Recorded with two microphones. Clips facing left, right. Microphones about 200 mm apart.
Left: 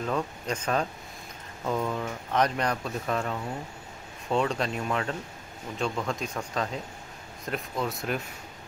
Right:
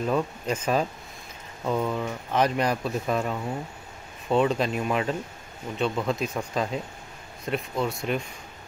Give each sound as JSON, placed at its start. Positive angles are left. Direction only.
{"t": 0.1, "sound": "speech", "side_deg": -5}
{"t": 4.7, "sound": "speech", "side_deg": -15}
{"t": 5.8, "sound": "speech", "side_deg": -5}